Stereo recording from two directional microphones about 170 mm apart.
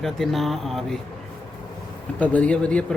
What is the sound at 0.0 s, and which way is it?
Speech, centre (ahead or behind).